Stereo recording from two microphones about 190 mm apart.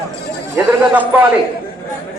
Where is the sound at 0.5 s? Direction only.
10° right (ahead or behind).